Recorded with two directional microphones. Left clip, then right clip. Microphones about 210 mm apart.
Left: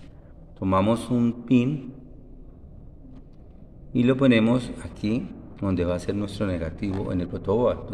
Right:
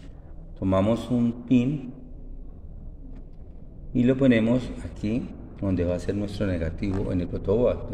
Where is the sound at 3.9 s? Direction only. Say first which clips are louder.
Left 1 dB; 15° left (ahead or behind).